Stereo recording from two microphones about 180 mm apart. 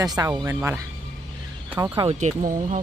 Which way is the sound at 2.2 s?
45° right (ahead or behind).